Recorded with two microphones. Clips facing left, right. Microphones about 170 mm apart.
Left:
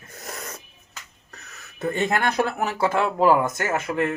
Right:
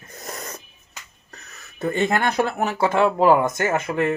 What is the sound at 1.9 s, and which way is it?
Speech, 5° left (ahead or behind).